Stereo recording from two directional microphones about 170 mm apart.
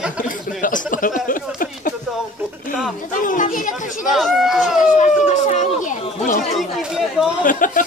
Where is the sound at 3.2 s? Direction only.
50° left (ahead or behind).